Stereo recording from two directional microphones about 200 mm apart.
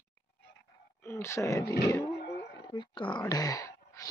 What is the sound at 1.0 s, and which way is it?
Speech, 15° left (ahead or behind).